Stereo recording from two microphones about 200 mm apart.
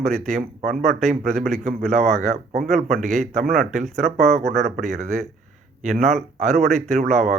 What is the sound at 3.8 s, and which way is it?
Speech, centre (ahead or behind).